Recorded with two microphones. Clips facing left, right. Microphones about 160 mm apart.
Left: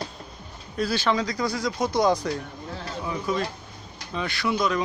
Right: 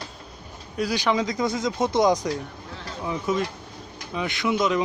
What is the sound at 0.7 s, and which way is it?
Speech, 15° right (ahead or behind).